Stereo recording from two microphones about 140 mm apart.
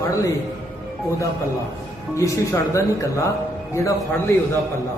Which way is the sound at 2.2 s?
25° left (ahead or behind).